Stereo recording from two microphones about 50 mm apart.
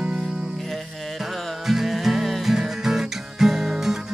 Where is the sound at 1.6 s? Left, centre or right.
Centre.